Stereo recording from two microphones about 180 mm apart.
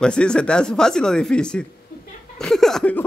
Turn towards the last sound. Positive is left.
turn(degrees=5)  # may be behind; listen again after turning